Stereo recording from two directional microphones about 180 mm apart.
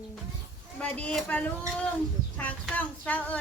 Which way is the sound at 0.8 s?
5° left (ahead or behind).